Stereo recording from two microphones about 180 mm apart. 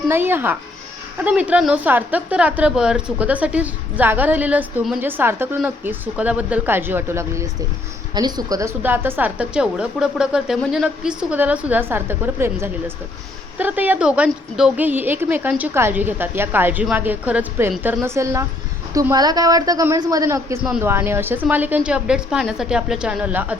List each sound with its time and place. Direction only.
0.1 s a woman's voice: 10° right (ahead or behind)